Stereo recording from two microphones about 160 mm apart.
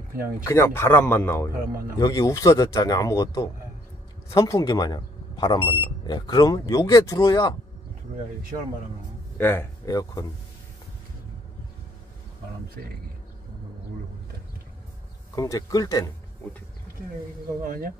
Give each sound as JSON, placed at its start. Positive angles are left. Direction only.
{"t": 0.5, "sound": "speech", "side_deg": 15}
{"t": 1.7, "sound": "speech", "side_deg": -65}
{"t": 2.0, "sound": "speech", "side_deg": 20}
{"t": 9.4, "sound": "speech", "side_deg": 15}
{"t": 12.8, "sound": "speech", "side_deg": -70}
{"t": 15.3, "sound": "speech", "side_deg": 20}
{"t": 17.6, "sound": "speech", "side_deg": -65}